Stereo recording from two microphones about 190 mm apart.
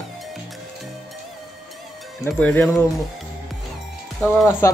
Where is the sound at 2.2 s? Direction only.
10° left (ahead or behind).